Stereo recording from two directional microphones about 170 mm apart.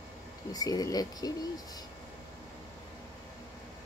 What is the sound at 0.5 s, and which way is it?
Speech, 20° left (ahead or behind).